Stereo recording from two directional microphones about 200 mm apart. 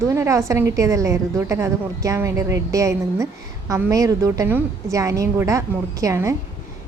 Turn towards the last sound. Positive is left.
turn(degrees=-15)  # may be behind; listen again after turning